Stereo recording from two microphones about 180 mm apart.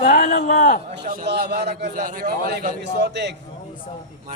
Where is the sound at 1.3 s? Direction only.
65° right (ahead or behind).